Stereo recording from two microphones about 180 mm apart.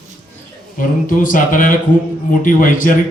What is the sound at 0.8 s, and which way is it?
A man's voice, 50° left (ahead or behind).